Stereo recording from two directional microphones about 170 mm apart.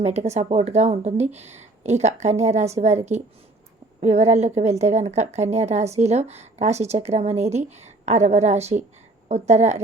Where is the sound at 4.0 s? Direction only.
40° right (ahead or behind).